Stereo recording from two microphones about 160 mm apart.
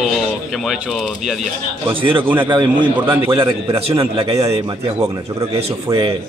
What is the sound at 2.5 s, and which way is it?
A man's voice, 30° right (ahead or behind).